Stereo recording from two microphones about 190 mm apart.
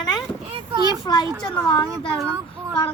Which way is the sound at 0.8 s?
20° left (ahead or behind).